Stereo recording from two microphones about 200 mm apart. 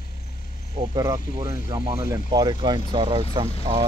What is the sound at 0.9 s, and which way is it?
Speech, 15° right (ahead or behind).